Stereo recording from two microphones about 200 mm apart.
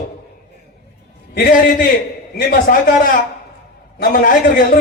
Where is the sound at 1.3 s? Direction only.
50° left (ahead or behind).